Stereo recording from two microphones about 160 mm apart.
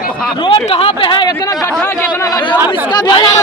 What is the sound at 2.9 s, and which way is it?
Speech, 25° left (ahead or behind).